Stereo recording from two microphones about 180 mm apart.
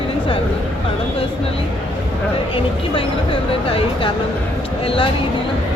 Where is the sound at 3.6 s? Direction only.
30° left (ahead or behind).